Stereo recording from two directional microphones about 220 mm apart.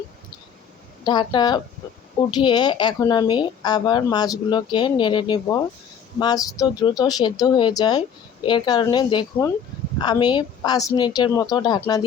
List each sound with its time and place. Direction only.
1.0 s a woman's voice: 20° left (ahead or behind)